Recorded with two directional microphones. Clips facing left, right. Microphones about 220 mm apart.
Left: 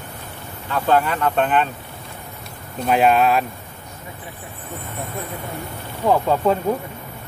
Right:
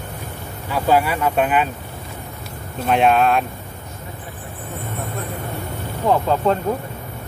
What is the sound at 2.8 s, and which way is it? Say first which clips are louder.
Speech: even; centre (ahead or behind).